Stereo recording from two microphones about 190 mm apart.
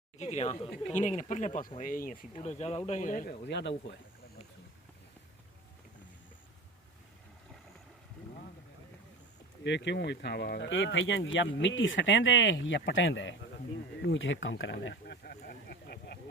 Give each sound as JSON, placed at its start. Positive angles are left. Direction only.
{"t": 0.2, "sound": "speech", "side_deg": 35}
{"t": 3.5, "sound": "speech", "side_deg": 65}
{"t": 9.6, "sound": "speech", "side_deg": 65}
{"t": 14.0, "sound": "a sound", "side_deg": 80}